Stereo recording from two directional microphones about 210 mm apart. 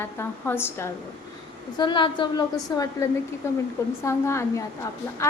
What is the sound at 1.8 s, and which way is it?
A woman's voice, 20° left (ahead or behind).